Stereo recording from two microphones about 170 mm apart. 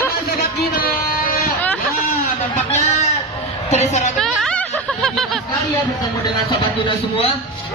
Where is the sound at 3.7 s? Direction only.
40° left (ahead or behind).